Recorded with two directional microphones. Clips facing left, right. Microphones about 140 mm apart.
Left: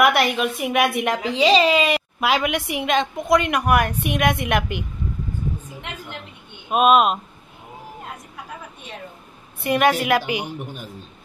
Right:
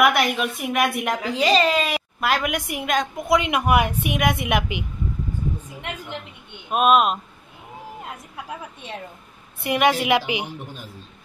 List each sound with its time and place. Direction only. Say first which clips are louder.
0.0 s a woman's voice: left 1 dB; centre (ahead or behind)
6.7 s a woman's voice: left 2 dB; centre (ahead or behind)
9.6 s a woman's voice: left 1 dB; 15° right (ahead or behind)